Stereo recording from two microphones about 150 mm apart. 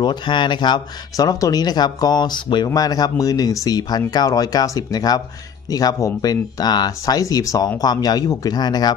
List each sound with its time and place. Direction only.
0.0 s speech: 30° left (ahead or behind)